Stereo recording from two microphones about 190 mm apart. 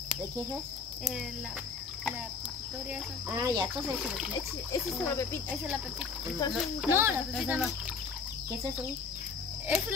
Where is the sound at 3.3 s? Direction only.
20° right (ahead or behind).